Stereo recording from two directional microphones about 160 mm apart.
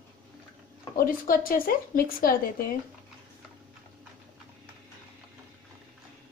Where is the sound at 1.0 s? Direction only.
60° left (ahead or behind).